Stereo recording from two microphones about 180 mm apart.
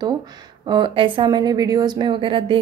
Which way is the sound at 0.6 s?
25° right (ahead or behind).